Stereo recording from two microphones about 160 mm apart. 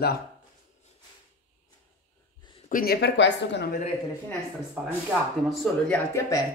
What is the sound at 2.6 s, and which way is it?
Speech, 65° left (ahead or behind).